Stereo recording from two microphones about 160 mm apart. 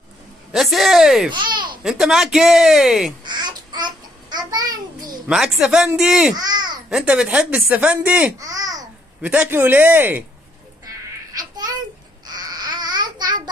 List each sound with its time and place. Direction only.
0.5 s speech: centre (ahead or behind)
1.3 s a sound: 30° right (ahead or behind)
1.8 s speech: 5° right (ahead or behind)
3.3 s babbling: 25° right (ahead or behind)
5.3 s speech: 5° right (ahead or behind)
6.3 s a child's voice: 25° right (ahead or behind)
6.9 s speech: 5° right (ahead or behind); by 8.8 s 20° right (ahead or behind)
9.2 s speech: 10° right (ahead or behind)
10.9 s babbling: 25° right (ahead or behind)